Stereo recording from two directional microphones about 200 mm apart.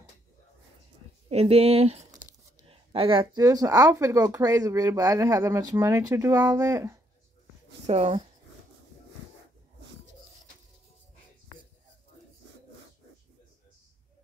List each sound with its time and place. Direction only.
1.3 s speech: 30° right (ahead or behind)
2.0 s speech: 20° right (ahead or behind)
7.8 s speech: 30° right (ahead or behind)